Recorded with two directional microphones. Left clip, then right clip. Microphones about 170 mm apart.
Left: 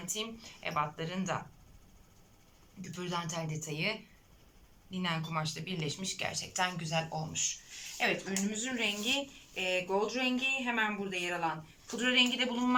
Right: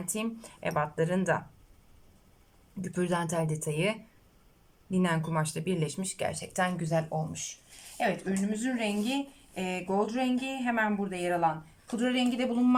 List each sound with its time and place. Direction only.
0.0 s speech: 55° right (ahead or behind)
2.9 s speech: 55° right (ahead or behind); by 8.3 s 35° right (ahead or behind)
8.4 s speech: 45° right (ahead or behind)
11.9 s speech: 35° right (ahead or behind)